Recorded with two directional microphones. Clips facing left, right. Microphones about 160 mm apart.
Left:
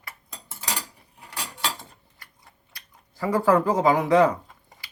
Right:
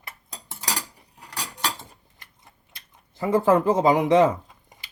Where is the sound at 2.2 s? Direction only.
20° right (ahead or behind).